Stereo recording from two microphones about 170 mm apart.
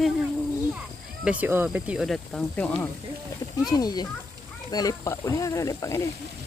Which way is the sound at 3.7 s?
25° left (ahead or behind).